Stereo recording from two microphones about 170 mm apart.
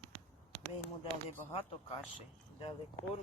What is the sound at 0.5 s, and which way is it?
Speech, 5° left (ahead or behind).